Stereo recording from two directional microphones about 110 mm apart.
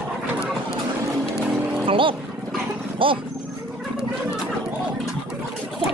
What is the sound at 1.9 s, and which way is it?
A child's voice, 50° right (ahead or behind).